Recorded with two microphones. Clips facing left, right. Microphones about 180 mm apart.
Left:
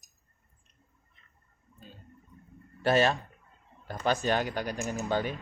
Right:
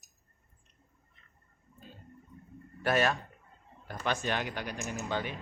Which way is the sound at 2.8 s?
30° left (ahead or behind).